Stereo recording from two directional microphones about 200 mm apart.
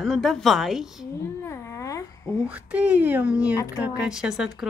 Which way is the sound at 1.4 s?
15° left (ahead or behind).